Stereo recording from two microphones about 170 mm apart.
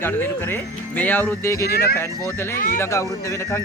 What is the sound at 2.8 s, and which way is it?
Speech, 15° left (ahead or behind).